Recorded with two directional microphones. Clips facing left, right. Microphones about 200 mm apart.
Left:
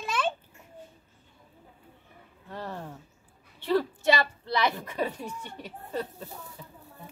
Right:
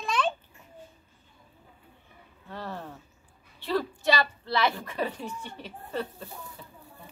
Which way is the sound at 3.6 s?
20° left (ahead or behind).